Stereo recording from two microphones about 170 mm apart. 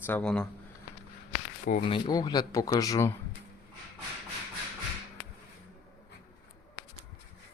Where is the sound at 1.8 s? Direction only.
30° left (ahead or behind).